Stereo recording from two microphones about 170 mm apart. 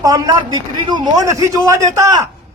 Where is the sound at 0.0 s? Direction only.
25° right (ahead or behind).